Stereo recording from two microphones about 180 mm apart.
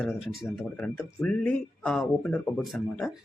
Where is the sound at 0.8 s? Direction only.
5° left (ahead or behind).